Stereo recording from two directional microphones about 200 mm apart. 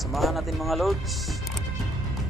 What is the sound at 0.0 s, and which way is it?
Speech, centre (ahead or behind).